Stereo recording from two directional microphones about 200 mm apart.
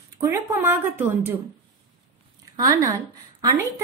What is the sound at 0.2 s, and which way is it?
A woman's voice, 10° right (ahead or behind).